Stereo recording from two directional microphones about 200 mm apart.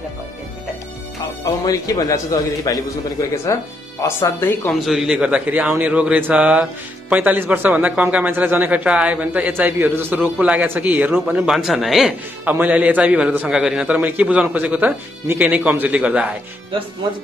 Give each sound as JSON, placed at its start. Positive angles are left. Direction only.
{"t": 1.4, "sound": "a man's voice", "side_deg": 15}
{"t": 4.7, "sound": "a man's voice", "side_deg": 0}